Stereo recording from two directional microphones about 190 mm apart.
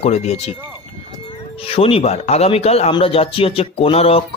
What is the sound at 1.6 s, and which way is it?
Speech, 30° left (ahead or behind).